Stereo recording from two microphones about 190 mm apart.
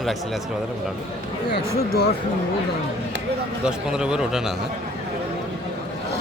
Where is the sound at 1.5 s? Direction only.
55° left (ahead or behind).